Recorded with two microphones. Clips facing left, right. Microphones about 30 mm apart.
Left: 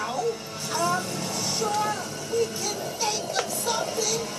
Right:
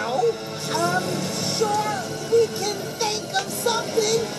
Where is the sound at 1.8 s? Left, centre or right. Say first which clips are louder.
Right 2 dB; right.